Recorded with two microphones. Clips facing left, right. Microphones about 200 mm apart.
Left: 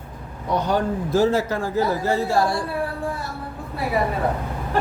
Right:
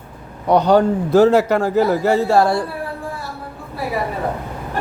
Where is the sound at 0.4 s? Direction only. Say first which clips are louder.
Right 8 dB; 70° right (ahead or behind).